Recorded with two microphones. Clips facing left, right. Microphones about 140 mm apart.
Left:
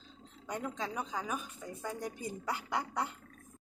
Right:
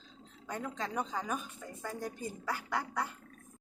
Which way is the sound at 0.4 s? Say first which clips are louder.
Left 1 dB; 15° left (ahead or behind).